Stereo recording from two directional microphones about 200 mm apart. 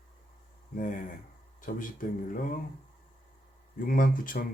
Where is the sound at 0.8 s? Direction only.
40° left (ahead or behind).